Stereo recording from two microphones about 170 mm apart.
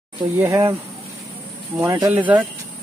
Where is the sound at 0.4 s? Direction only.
20° right (ahead or behind).